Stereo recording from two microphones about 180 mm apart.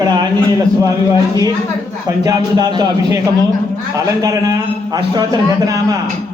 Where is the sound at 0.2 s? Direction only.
25° right (ahead or behind).